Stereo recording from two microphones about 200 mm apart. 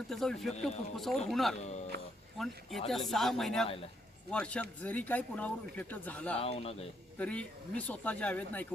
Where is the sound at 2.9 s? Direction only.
Centre (ahead or behind).